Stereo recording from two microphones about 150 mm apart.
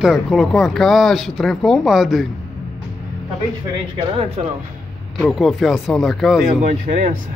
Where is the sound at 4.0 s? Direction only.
40° right (ahead or behind).